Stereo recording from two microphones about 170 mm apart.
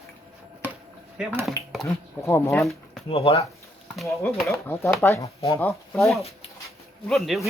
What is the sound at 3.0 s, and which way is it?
Speech, 35° left (ahead or behind).